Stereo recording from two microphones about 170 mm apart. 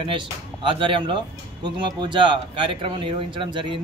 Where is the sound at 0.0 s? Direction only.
30° right (ahead or behind).